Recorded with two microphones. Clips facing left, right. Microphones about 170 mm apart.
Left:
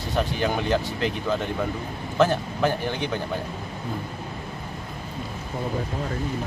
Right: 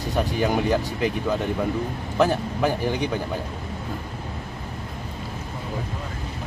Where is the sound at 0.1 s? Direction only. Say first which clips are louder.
Right 2 dB; 10° right (ahead or behind).